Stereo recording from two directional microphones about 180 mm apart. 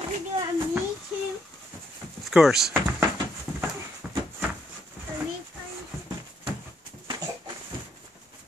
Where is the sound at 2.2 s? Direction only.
Centre (ahead or behind).